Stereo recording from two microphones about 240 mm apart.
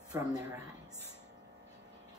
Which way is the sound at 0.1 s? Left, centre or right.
Centre.